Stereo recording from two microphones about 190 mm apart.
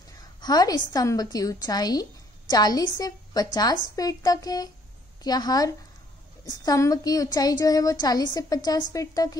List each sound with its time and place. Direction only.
0.4 s a woman's voice: 20° left (ahead or behind)